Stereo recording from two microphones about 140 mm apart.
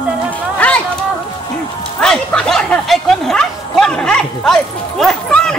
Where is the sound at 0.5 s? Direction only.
10° left (ahead or behind).